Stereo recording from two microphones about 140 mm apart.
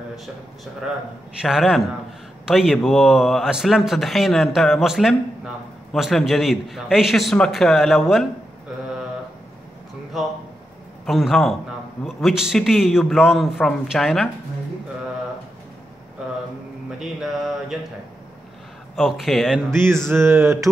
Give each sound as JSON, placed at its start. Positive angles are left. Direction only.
{"t": 1.4, "sound": "a man's voice", "side_deg": -5}
{"t": 11.1, "sound": "a man's voice", "side_deg": 0}
{"t": 17.0, "sound": "a man's voice", "side_deg": 0}
{"t": 18.9, "sound": "a man's voice", "side_deg": 0}
{"t": 19.7, "sound": "a sound", "side_deg": -20}